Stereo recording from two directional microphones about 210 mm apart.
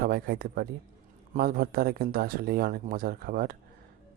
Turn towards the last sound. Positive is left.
turn(degrees=-45)  # may be behind; listen again after turning